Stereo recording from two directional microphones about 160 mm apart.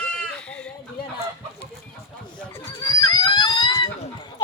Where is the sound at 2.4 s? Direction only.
20° left (ahead or behind).